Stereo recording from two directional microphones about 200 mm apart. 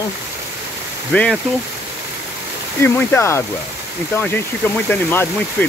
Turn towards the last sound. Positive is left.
turn(degrees=10)  # may be behind; listen again after turning